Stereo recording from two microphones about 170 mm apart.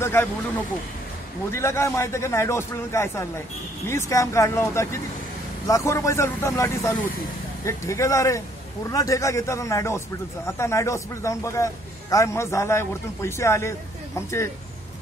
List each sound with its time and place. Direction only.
0.0 s speech: 15° left (ahead or behind)
1.5 s speech: 15° left (ahead or behind)